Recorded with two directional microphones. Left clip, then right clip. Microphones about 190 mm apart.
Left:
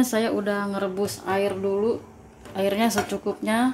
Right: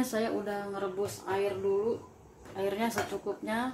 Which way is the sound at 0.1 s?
35° left (ahead or behind).